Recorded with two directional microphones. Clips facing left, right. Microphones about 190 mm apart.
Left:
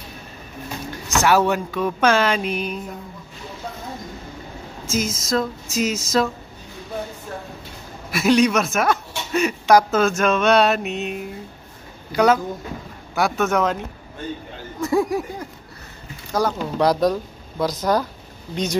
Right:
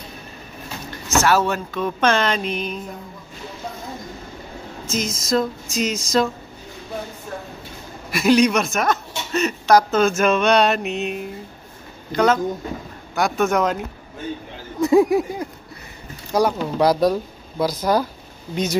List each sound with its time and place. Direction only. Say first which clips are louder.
1.0 s speech: left 1 dB; 15° left (ahead or behind)
4.8 s speech: left 1 dB; 5° left (ahead or behind)
8.1 s speech: right 1 dB; centre (ahead or behind)
14.8 s speech: right 5 dB; 15° right (ahead or behind)
16.5 s speech: right 1 dB; 5° right (ahead or behind)